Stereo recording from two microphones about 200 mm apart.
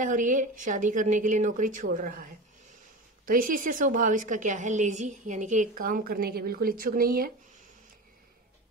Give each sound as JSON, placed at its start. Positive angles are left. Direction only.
{"t": 0.0, "sound": "a woman's voice", "side_deg": -40}